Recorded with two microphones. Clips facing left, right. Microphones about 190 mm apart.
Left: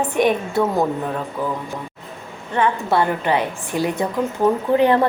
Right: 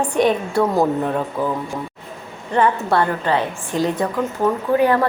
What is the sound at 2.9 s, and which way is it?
A woman's voice, 15° left (ahead or behind).